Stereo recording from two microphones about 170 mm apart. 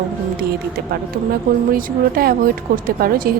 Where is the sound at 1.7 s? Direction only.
60° right (ahead or behind).